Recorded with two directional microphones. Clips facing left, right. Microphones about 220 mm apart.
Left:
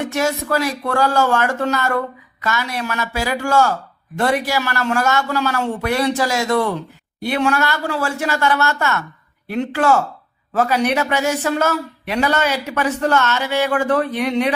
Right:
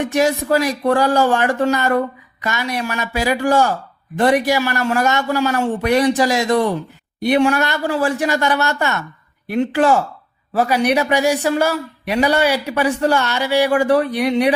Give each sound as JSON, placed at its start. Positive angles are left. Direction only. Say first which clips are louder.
{"t": 0.0, "sound": "speech", "louder": "right 3 dB", "side_deg": -15}